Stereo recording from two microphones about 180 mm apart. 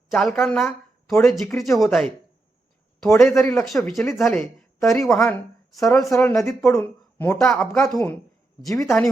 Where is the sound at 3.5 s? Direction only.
Centre (ahead or behind).